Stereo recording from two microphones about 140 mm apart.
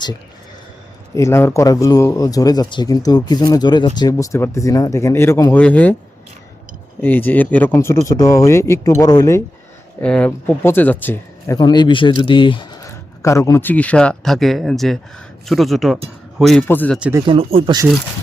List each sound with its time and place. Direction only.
1.1 s speech: 20° left (ahead or behind)
7.0 s speech: 15° left (ahead or behind)
10.0 s speech: 10° left (ahead or behind)
11.5 s speech: 30° left (ahead or behind)
12.8 s speech: 20° left (ahead or behind); by 16.6 s centre (ahead or behind)
16.6 s speech: 10° left (ahead or behind)
17.0 s speech: 15° right (ahead or behind)
17.2 s speech: 40° right (ahead or behind)